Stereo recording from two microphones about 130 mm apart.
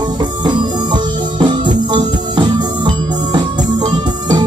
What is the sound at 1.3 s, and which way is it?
Music, 35° right (ahead or behind).